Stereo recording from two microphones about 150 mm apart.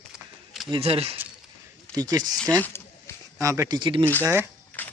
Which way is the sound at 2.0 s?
25° right (ahead or behind).